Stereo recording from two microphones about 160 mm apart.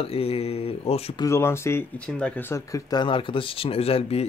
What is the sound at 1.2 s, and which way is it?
Speech, 15° left (ahead or behind).